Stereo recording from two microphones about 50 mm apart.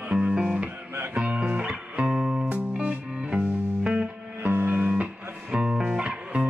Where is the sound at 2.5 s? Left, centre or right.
Right.